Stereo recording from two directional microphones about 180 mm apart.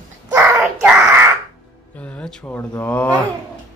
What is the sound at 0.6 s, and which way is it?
Child singing, 5° right (ahead or behind).